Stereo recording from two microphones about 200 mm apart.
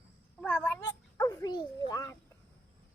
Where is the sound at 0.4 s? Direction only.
10° left (ahead or behind).